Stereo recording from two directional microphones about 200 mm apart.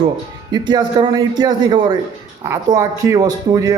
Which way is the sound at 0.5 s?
20° right (ahead or behind).